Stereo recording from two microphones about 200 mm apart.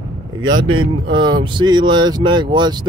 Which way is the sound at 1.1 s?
20° right (ahead or behind).